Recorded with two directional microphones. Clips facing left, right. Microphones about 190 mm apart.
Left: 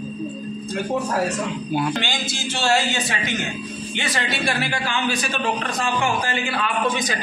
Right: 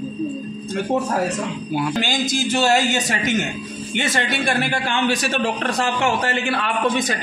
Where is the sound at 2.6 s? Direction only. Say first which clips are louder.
Right 1 dB; 45° right (ahead or behind); by 6.3 s 70° right (ahead or behind).